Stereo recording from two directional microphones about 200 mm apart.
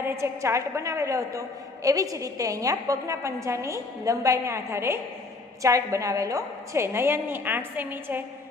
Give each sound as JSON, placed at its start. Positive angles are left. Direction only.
{"t": 0.0, "sound": "a woman's voice", "side_deg": -15}